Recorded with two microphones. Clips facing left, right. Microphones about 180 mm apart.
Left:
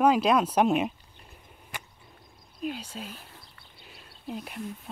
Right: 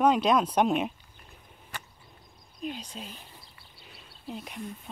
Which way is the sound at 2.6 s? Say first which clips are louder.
Left 2 dB; 5° left (ahead or behind).